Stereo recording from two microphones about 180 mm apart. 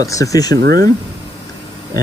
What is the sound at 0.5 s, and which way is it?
Speech, 65° right (ahead or behind).